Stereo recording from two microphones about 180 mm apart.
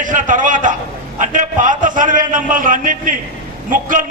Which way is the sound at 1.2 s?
45° right (ahead or behind).